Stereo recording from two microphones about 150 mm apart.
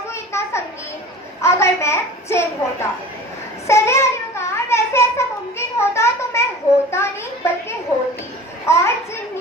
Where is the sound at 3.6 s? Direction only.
20° left (ahead or behind).